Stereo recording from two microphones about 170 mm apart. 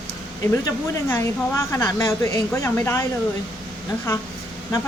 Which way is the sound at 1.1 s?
15° left (ahead or behind).